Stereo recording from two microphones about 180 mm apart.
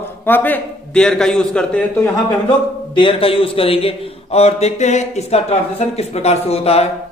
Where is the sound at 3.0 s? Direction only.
30° left (ahead or behind).